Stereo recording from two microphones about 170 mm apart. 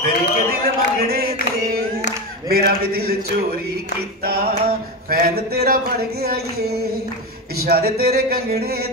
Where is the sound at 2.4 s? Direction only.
65° right (ahead or behind).